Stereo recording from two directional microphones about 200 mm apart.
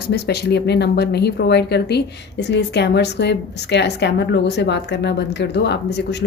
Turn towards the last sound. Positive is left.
turn(degrees=60)  # may be behind; listen again after turning